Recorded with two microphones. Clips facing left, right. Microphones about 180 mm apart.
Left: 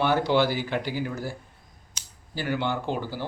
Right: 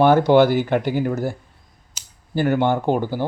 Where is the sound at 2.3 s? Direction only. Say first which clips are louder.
Right 9 dB; 50° right (ahead or behind).